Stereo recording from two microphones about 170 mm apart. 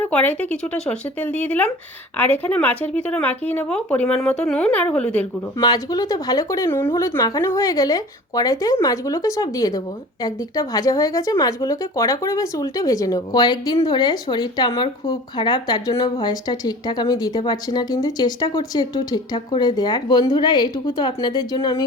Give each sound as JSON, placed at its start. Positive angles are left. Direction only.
{"t": 0.0, "sound": "speech", "side_deg": 10}
{"t": 5.5, "sound": "speech", "side_deg": 25}